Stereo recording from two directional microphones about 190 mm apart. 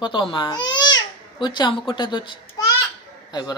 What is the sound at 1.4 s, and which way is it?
A child's voice, 25° left (ahead or behind).